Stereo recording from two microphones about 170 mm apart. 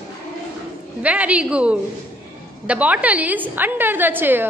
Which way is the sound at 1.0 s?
10° right (ahead or behind).